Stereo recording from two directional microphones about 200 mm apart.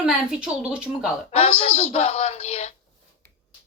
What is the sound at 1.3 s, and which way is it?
Speech, 30° left (ahead or behind).